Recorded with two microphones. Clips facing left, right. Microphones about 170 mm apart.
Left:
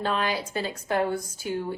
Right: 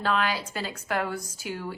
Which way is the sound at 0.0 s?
25° left (ahead or behind).